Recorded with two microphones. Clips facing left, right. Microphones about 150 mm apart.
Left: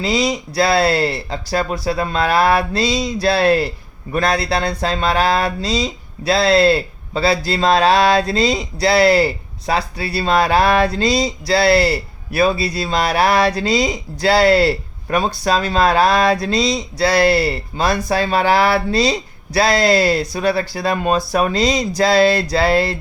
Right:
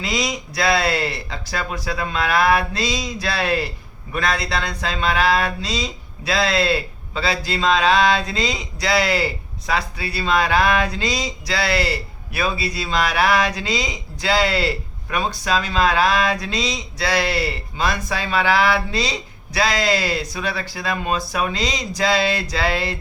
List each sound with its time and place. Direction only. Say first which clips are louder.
0.0 s speech: left 6 dB; 30° left (ahead or behind)